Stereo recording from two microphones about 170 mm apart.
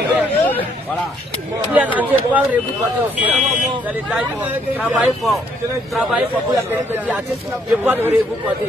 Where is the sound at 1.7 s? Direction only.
10° right (ahead or behind).